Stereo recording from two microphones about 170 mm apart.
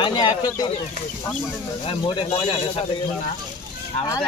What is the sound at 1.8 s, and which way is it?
Speech, 30° left (ahead or behind).